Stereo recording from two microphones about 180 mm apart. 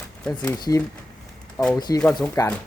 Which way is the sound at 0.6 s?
20° left (ahead or behind).